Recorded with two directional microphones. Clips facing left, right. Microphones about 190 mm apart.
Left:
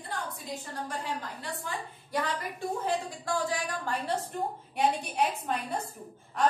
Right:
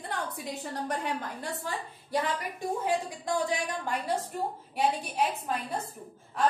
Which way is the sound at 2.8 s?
20° right (ahead or behind).